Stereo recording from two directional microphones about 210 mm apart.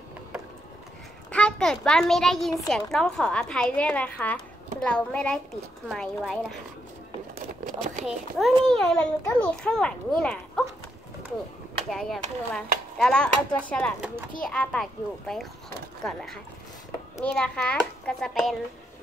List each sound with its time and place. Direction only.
1.3 s a child's voice: 5° left (ahead or behind)
7.3 s a sound: 40° right (ahead or behind)
8.0 s speech: centre (ahead or behind)
11.9 s speech: centre (ahead or behind)